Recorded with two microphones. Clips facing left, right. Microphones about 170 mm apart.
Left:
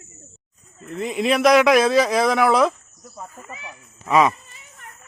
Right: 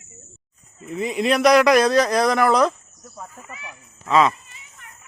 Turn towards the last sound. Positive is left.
turn(degrees=15)  # may be behind; listen again after turning